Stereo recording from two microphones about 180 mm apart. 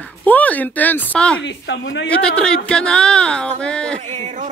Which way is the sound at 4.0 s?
40° right (ahead or behind).